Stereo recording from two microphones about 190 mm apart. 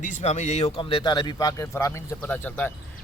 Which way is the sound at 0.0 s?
40° left (ahead or behind).